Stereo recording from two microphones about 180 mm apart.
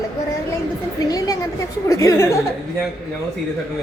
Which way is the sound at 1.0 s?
20° left (ahead or behind).